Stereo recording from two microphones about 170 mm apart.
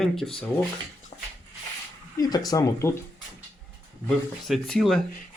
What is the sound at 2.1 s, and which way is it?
Speech, 20° left (ahead or behind).